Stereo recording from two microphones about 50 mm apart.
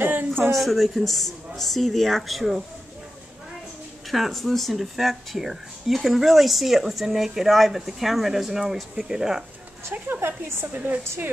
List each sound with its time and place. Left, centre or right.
0.0 s a sound: right
0.6 s speech: centre
4.1 s speech: centre
10.0 s a woman's voice: right